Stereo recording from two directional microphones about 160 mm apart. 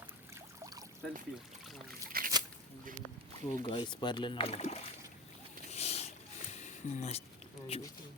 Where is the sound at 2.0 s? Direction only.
65° right (ahead or behind).